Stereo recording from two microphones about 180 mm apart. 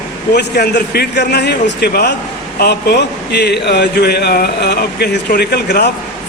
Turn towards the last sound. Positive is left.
turn(degrees=65)  # may be behind; listen again after turning